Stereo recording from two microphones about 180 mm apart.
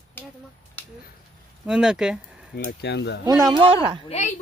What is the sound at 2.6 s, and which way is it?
Speech, 60° left (ahead or behind).